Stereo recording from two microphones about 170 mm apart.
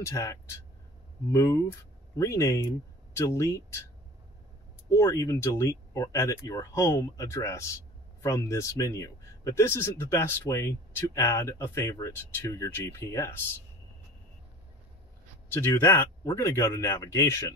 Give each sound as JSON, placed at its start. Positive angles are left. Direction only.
{"t": 0.0, "sound": "speech", "side_deg": 20}
{"t": 4.8, "sound": "speech", "side_deg": 20}
{"t": 15.5, "sound": "speech", "side_deg": 15}